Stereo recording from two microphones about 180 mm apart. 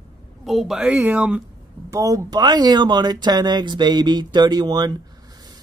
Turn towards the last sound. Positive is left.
turn(degrees=-25)  # may be behind; listen again after turning